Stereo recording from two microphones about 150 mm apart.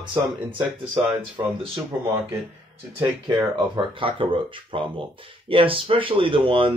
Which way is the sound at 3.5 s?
35° right (ahead or behind).